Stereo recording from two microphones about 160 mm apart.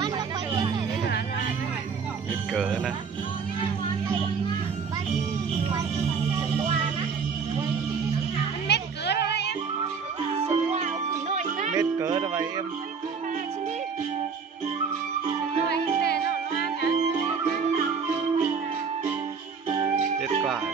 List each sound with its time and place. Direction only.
2.5 s speech: 5° right (ahead or behind)
8.6 s a sound: 90° left
10.4 s music: 45° right (ahead or behind)
11.7 s music: 20° right (ahead or behind)
15.7 s music: 90° left